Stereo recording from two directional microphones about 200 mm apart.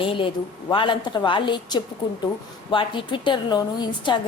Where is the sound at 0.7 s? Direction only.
25° left (ahead or behind).